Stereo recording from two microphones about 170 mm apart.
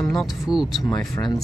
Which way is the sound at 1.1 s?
20° left (ahead or behind).